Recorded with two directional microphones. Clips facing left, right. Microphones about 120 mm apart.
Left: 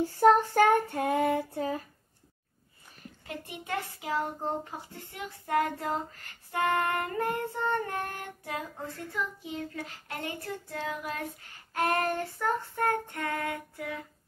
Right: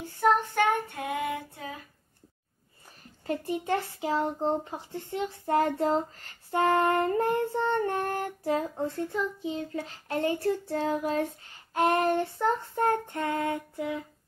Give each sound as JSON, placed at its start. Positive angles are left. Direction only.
{"t": 0.2, "sound": "child singing", "side_deg": 35}
{"t": 3.3, "sound": "child singing", "side_deg": -35}
{"t": 11.7, "sound": "child singing", "side_deg": -25}